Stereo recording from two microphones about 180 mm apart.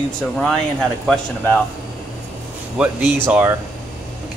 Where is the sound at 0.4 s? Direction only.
5° left (ahead or behind).